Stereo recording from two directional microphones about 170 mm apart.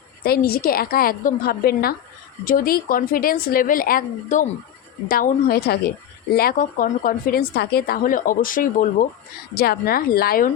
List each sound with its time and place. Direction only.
0.3 s a woman's voice: 65° left (ahead or behind)
9.6 s a woman's voice: 65° left (ahead or behind)